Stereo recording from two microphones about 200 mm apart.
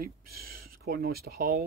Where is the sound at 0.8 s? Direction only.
50° right (ahead or behind).